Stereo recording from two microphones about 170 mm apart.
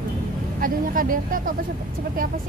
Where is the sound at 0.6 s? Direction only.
55° right (ahead or behind).